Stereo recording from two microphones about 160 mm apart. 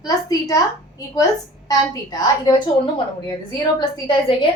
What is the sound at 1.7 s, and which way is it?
Speech, 25° left (ahead or behind).